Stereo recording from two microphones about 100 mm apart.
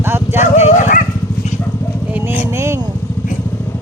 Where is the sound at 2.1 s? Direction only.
25° right (ahead or behind).